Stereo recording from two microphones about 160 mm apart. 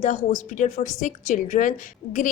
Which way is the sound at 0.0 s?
50° left (ahead or behind).